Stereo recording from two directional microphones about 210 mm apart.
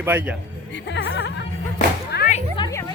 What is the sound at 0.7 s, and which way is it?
Music, 55° left (ahead or behind).